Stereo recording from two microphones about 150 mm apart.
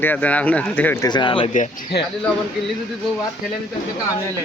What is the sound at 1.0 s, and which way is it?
Speech, 30° left (ahead or behind).